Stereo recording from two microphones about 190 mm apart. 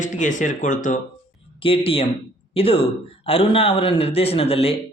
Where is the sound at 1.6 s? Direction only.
30° left (ahead or behind).